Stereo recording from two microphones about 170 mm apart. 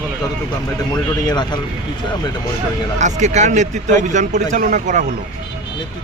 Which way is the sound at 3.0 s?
45° right (ahead or behind).